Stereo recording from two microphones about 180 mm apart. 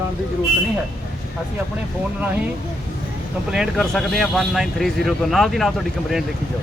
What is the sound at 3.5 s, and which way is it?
A man's voice, centre (ahead or behind).